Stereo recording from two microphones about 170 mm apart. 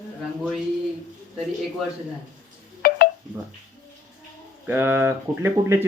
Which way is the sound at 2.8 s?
60° left (ahead or behind).